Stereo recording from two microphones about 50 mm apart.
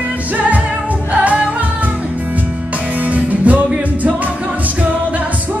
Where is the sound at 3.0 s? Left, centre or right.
Right.